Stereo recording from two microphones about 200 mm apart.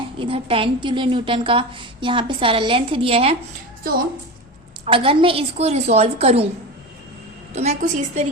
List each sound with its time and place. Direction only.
0.2 s a woman's voice: 25° right (ahead or behind)
4.9 s a woman's voice: 25° right (ahead or behind)
7.5 s a woman's voice: 35° right (ahead or behind)